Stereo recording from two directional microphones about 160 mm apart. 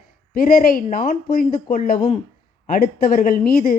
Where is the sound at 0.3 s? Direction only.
65° left (ahead or behind).